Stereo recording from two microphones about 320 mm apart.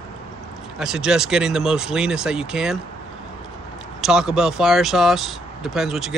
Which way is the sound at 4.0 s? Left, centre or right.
Centre.